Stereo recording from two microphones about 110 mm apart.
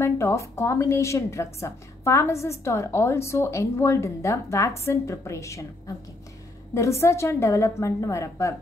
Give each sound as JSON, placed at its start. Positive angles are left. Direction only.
{"t": 0.0, "sound": "a woman's voice", "side_deg": 25}